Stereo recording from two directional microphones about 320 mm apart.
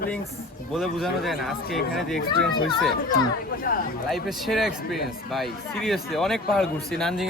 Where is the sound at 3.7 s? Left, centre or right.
Left.